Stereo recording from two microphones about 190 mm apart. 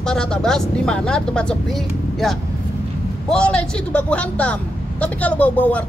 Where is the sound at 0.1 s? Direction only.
5° left (ahead or behind).